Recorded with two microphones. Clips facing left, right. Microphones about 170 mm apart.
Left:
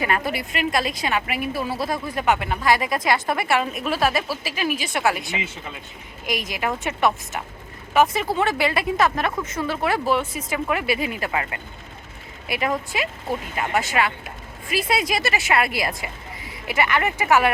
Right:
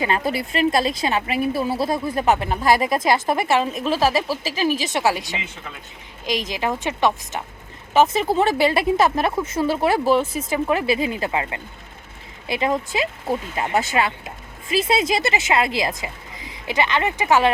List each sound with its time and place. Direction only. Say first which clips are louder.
0.0 s speech: right 2 dB; 25° right (ahead or behind); by 2.9 s 45° right (ahead or behind)
2.9 s speech: right 3 dB; 25° right (ahead or behind)
6.5 s speech: right 2 dB; 25° right (ahead or behind)